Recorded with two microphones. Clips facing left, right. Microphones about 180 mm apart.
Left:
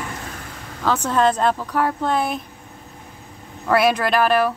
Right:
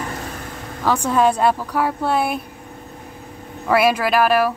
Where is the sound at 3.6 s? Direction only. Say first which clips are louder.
Right 1 dB; 5° right (ahead or behind).